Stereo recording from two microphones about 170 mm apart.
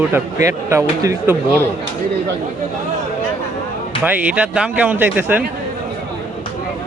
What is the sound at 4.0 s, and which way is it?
A man's voice, 10° right (ahead or behind).